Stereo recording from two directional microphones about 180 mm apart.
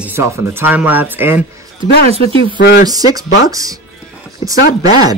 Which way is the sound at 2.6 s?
60° left (ahead or behind).